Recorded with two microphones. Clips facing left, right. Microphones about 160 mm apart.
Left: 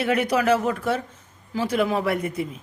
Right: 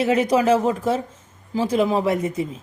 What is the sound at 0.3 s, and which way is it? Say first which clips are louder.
Speech: right 3 dB; 30° right (ahead or behind).